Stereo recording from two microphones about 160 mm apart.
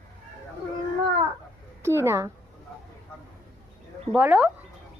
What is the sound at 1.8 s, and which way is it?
Speech, 15° right (ahead or behind).